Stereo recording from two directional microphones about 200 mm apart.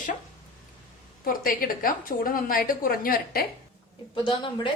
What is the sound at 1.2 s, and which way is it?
A woman's voice, 45° left (ahead or behind).